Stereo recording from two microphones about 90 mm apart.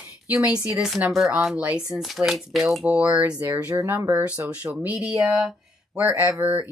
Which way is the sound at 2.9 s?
15° right (ahead or behind).